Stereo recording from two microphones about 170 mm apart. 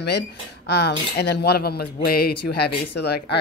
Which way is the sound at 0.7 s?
75° left (ahead or behind).